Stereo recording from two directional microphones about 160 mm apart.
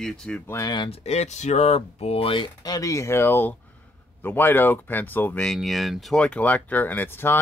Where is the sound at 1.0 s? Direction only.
45° left (ahead or behind).